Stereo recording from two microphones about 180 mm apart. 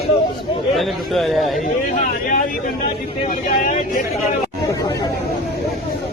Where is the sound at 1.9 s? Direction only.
50° left (ahead or behind).